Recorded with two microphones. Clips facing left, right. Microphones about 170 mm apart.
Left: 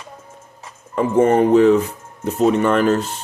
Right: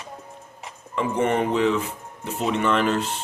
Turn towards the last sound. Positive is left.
turn(degrees=40)  # may be behind; listen again after turning